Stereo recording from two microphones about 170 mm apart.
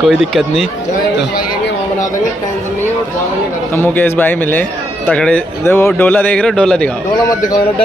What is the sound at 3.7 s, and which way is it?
A man's voice, 10° left (ahead or behind).